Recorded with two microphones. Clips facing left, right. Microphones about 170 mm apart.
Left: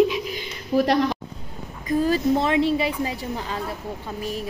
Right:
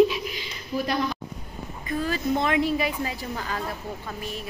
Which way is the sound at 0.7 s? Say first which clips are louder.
Left 7 dB; 75° left (ahead or behind).